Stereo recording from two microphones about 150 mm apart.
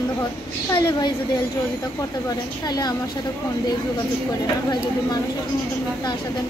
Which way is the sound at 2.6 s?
25° left (ahead or behind).